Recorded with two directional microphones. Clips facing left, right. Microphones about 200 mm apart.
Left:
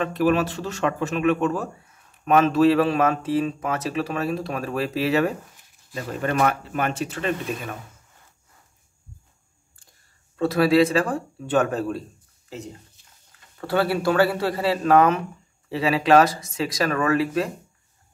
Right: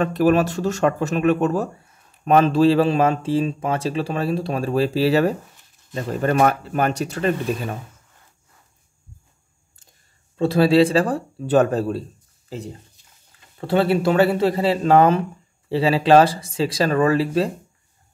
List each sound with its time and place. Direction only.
0.0 s a man's voice: 40° right (ahead or behind)
10.3 s speech: 25° right (ahead or behind)
13.6 s a man's voice: 25° right (ahead or behind)